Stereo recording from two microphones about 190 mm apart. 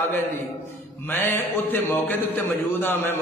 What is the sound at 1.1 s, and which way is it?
A man's voice, 10° left (ahead or behind).